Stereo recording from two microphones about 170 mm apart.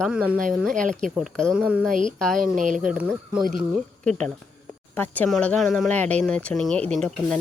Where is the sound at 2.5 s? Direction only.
50° right (ahead or behind).